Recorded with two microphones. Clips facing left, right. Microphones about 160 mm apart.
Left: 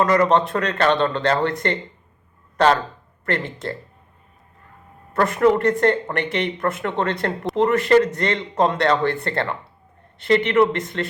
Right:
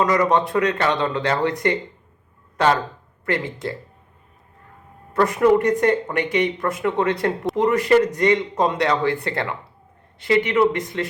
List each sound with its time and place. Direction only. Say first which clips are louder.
0.0 s speech: left 1 dB; 10° right (ahead or behind)
3.2 s speech: right 1 dB; 10° right (ahead or behind)
5.1 s speech: right 1 dB; 10° right (ahead or behind)